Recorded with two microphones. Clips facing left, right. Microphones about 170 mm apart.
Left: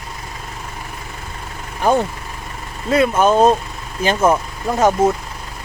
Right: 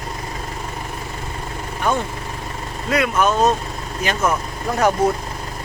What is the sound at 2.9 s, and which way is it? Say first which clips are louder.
Speech: left 4 dB; 30° left (ahead or behind).